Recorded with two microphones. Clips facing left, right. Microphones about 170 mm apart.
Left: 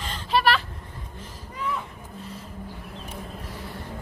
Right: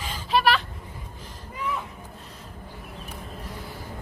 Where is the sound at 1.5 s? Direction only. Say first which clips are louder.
Even; centre (ahead or behind).